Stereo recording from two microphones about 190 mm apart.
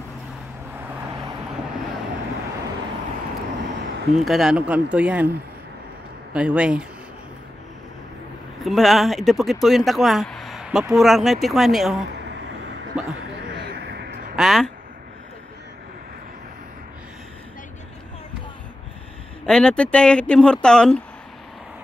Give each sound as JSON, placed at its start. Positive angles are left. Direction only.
{"t": 4.1, "sound": "speech", "side_deg": 0}
{"t": 6.3, "sound": "speech", "side_deg": -5}
{"t": 8.6, "sound": "speech", "side_deg": 0}
{"t": 13.5, "sound": "vehicle", "side_deg": -60}
{"t": 14.3, "sound": "speech", "side_deg": 0}
{"t": 19.4, "sound": "speech", "side_deg": 5}